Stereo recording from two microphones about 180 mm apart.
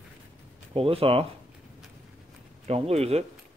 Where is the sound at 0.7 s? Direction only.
30° right (ahead or behind).